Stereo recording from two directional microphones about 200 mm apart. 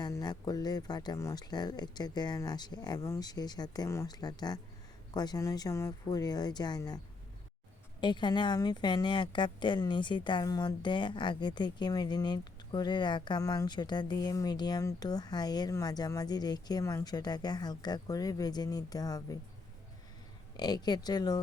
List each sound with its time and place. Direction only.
0.0 s a woman's voice: 20° left (ahead or behind)
8.0 s a woman's voice: 20° left (ahead or behind)
20.6 s a woman's voice: 20° left (ahead or behind)